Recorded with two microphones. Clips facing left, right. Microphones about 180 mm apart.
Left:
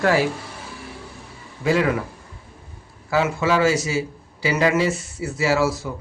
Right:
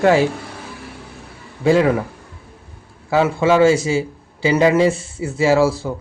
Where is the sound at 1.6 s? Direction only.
30° right (ahead or behind).